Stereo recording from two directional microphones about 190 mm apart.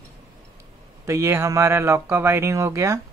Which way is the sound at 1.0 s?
15° right (ahead or behind).